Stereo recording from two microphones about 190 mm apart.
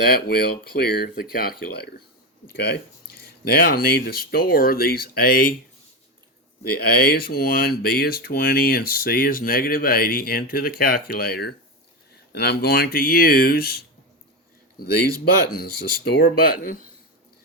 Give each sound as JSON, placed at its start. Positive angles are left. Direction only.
{"t": 0.0, "sound": "speech", "side_deg": 55}
{"t": 6.6, "sound": "speech", "side_deg": 55}
{"t": 15.2, "sound": "speech", "side_deg": 50}